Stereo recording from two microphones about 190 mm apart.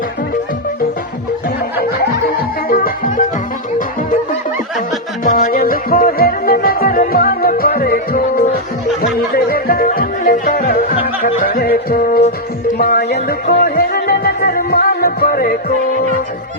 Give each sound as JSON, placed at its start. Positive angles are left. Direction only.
{"t": 1.8, "sound": "music", "side_deg": 50}
{"t": 5.2, "sound": "music", "side_deg": 45}